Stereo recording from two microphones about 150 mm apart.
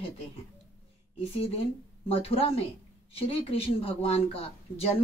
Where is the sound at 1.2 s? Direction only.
40° left (ahead or behind).